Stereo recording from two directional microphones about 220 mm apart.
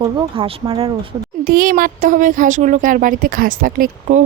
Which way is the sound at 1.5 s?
40° right (ahead or behind).